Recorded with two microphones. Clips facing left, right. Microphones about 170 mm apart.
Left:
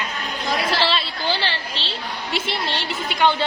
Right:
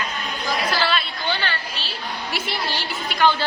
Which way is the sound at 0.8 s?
30° left (ahead or behind).